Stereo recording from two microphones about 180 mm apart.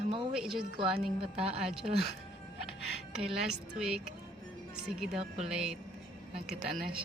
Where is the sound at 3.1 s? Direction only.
5° right (ahead or behind).